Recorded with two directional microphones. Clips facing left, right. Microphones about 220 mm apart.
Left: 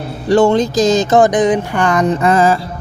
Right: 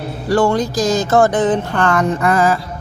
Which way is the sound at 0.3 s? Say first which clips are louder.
Left 4 dB; 25° left (ahead or behind).